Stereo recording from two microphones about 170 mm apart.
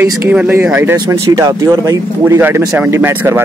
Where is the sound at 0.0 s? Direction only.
15° right (ahead or behind).